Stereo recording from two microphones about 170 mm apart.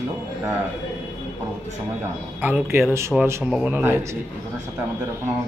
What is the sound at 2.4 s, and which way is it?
Speech, 15° right (ahead or behind).